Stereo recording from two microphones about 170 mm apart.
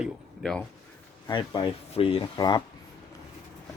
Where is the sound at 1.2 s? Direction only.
25° left (ahead or behind).